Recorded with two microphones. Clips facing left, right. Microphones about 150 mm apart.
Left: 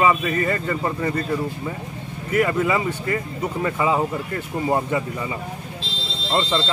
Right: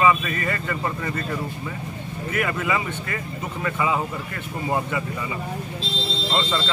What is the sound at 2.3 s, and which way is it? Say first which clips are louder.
Speech: left 5 dB; 30° left (ahead or behind).